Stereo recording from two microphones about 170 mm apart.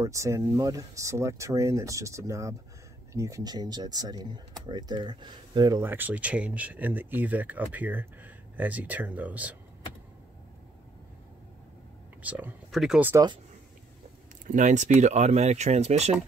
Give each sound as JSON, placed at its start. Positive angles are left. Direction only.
{"t": 0.0, "sound": "speech", "side_deg": -20}
{"t": 5.8, "sound": "speech", "side_deg": -10}
{"t": 12.2, "sound": "speech", "side_deg": -10}
{"t": 13.1, "sound": "speech", "side_deg": -25}
{"t": 14.4, "sound": "speech", "side_deg": -45}